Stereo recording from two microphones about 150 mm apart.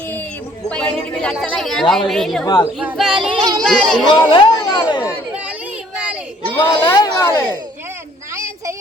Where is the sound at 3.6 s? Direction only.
Centre (ahead or behind).